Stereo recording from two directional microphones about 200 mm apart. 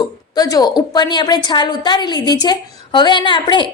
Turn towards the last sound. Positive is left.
turn(degrees=25)  # may be behind; listen again after turning